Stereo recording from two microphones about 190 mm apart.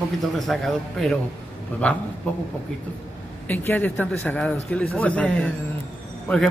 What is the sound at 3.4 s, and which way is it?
Speech, 10° left (ahead or behind).